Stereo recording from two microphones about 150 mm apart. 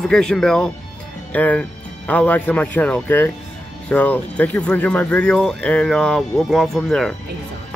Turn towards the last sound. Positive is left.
turn(degrees=5)  # may be behind; listen again after turning